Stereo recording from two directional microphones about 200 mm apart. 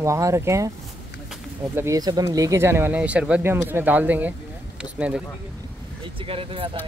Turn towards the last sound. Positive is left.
turn(degrees=-25)  # may be behind; listen again after turning